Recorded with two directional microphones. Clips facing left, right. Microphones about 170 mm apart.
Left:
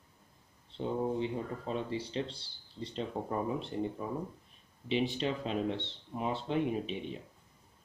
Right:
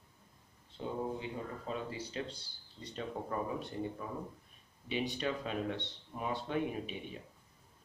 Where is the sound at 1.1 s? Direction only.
30° left (ahead or behind).